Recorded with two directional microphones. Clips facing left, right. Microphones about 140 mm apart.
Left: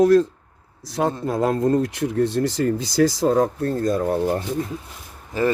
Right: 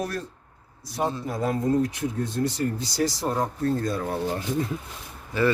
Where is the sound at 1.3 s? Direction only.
90° left; by 3.7 s 75° left (ahead or behind).